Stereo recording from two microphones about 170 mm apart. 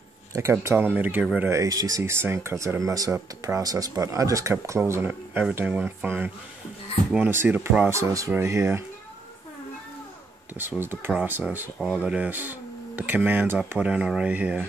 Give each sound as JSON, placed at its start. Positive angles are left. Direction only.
{"t": 0.3, "sound": "speech", "side_deg": -15}
{"t": 1.5, "sound": "speech", "side_deg": -20}
{"t": 7.9, "sound": "speech", "side_deg": -20}
{"t": 10.6, "sound": "speech", "side_deg": -10}